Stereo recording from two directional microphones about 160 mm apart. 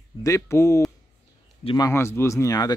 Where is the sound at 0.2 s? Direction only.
20° left (ahead or behind).